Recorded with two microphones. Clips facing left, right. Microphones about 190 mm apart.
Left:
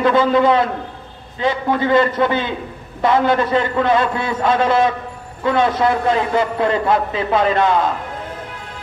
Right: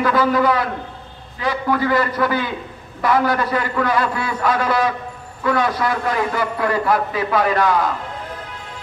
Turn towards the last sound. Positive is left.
turn(degrees=25)  # may be behind; listen again after turning